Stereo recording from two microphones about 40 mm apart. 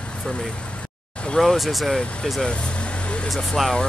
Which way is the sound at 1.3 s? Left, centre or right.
Centre.